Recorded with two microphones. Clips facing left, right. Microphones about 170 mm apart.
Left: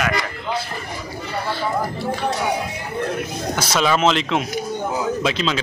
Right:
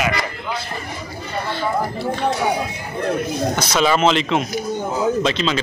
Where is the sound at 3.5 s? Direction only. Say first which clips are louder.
Even; centre (ahead or behind).